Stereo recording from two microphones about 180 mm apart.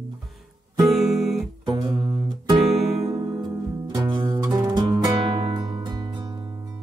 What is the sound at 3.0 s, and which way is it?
Music, 35° right (ahead or behind).